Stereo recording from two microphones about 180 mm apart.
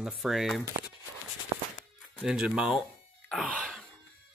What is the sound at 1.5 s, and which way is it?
Music, 30° right (ahead or behind).